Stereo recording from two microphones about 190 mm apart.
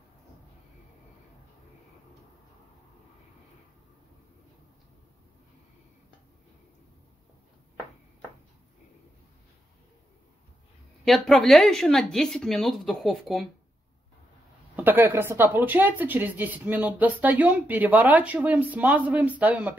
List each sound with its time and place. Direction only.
11.1 s speech: centre (ahead or behind)
14.8 s speech: 10° right (ahead or behind)